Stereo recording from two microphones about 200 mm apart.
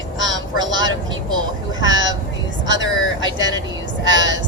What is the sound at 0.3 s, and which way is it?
Vehicle, 20° right (ahead or behind).